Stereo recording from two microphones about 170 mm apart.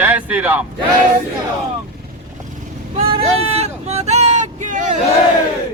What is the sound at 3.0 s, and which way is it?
Vehicle, 35° right (ahead or behind).